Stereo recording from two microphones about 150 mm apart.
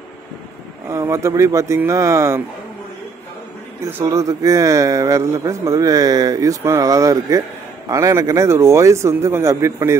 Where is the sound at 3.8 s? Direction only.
15° right (ahead or behind).